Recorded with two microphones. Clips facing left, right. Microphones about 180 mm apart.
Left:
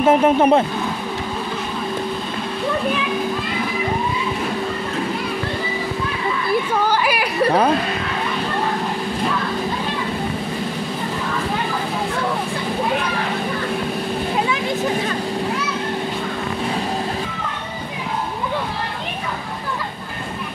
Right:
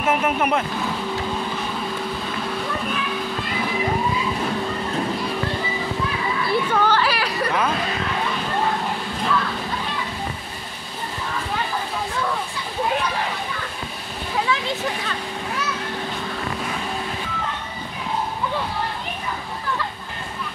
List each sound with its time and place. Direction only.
0.0 s speech: 30° left (ahead or behind)
6.7 s a sound: 10° left (ahead or behind)
7.4 s speech: 35° left (ahead or behind)